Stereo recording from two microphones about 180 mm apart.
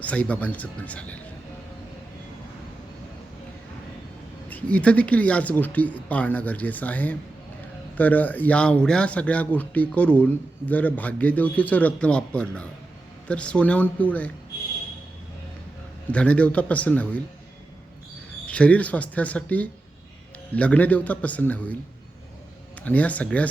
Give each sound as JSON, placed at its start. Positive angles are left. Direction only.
{"t": 0.0, "sound": "speech", "side_deg": 10}
{"t": 4.4, "sound": "speech", "side_deg": 10}
{"t": 16.1, "sound": "speech", "side_deg": 5}
{"t": 18.4, "sound": "speech", "side_deg": 5}
{"t": 22.8, "sound": "speech", "side_deg": 10}